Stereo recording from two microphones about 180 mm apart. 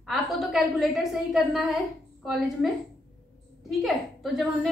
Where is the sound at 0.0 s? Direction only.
Centre (ahead or behind).